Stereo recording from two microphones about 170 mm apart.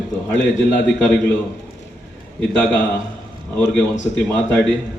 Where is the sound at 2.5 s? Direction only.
5° left (ahead or behind).